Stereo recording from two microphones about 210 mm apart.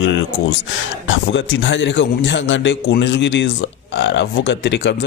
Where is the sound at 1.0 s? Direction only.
60° left (ahead or behind).